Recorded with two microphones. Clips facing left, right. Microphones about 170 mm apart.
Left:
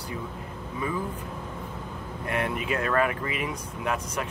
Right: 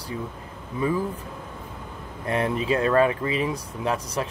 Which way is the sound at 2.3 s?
30° right (ahead or behind).